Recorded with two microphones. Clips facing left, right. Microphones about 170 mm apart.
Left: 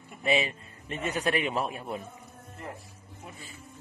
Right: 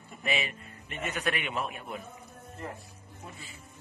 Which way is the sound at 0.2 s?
30° left (ahead or behind).